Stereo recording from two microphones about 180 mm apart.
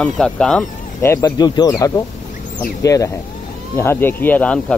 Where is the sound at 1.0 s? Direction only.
15° left (ahead or behind).